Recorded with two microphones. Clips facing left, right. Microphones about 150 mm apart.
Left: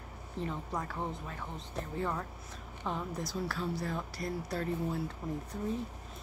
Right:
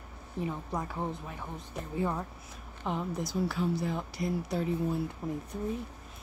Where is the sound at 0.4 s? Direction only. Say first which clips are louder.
Right 2 dB; 10° right (ahead or behind).